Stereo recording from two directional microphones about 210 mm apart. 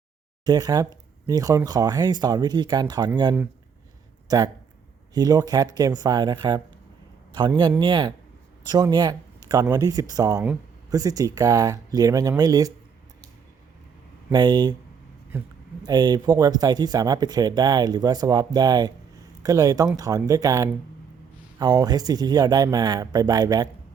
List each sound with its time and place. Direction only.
0.4 s speech: 20° right (ahead or behind)
4.3 s speech: 15° right (ahead or behind)
14.3 s speech: 20° right (ahead or behind)